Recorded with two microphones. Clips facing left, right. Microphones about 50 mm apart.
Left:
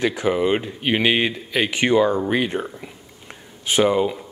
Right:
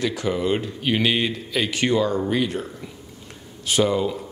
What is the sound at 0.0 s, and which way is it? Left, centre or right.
A man's voice, left.